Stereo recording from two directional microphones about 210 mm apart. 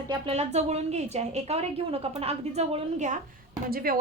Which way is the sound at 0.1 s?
30° right (ahead or behind).